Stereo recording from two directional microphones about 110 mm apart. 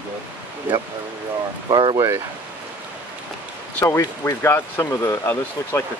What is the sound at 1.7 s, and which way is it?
Speech, 45° right (ahead or behind).